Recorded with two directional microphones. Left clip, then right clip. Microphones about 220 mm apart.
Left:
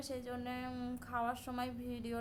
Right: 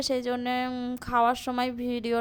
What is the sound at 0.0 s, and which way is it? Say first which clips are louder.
A woman's voice: right 15 dB; 40° right (ahead or behind).